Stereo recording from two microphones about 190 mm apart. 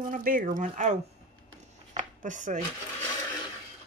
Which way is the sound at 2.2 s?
40° right (ahead or behind).